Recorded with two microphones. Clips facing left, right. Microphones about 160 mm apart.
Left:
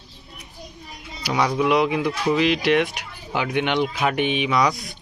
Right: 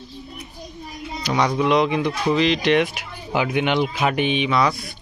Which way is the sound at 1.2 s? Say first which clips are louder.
Right 1 dB; 10° left (ahead or behind).